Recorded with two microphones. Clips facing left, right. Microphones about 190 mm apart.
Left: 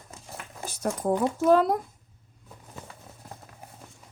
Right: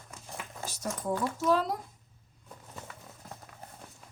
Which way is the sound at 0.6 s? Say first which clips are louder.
Left 7 dB; 55° left (ahead or behind).